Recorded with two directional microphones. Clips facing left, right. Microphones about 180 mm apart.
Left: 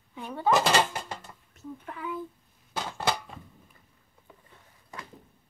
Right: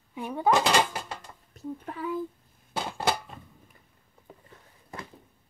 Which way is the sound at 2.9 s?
10° right (ahead or behind).